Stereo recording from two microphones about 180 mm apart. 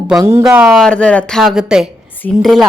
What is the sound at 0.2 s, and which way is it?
Speech, 15° right (ahead or behind).